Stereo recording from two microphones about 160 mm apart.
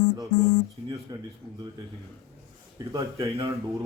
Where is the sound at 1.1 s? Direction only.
25° right (ahead or behind).